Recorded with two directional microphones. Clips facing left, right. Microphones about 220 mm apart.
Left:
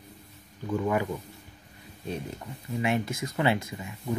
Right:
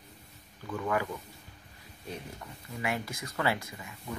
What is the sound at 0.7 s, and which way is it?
Speech, 20° left (ahead or behind).